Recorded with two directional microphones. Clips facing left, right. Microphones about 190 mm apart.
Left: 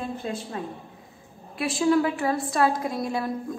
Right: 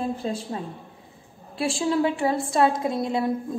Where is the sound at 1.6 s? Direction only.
30° right (ahead or behind).